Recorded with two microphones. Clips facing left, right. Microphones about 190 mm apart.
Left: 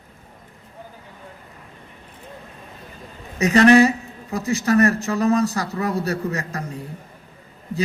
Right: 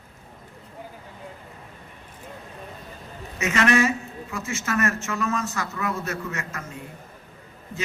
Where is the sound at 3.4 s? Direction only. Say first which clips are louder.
Left 8 dB; 35° left (ahead or behind).